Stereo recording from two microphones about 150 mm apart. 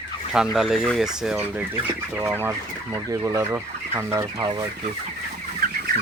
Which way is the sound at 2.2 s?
15° right (ahead or behind).